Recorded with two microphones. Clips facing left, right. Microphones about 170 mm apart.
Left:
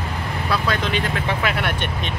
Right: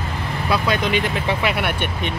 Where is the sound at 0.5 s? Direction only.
15° right (ahead or behind).